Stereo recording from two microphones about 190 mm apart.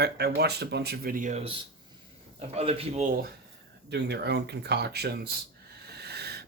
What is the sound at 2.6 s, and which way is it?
Speech, 35° right (ahead or behind).